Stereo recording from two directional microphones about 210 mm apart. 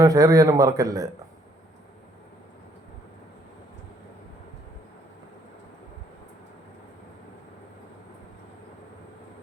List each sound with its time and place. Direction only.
0.0 s a man's voice: 15° right (ahead or behind)